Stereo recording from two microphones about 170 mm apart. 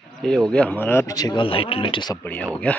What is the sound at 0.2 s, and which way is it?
Speech, 5° left (ahead or behind).